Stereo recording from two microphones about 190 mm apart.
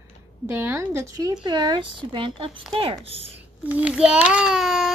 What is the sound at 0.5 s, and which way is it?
A woman's voice, 10° right (ahead or behind).